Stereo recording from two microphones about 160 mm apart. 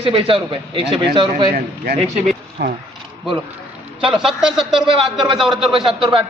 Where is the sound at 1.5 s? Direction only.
70° right (ahead or behind).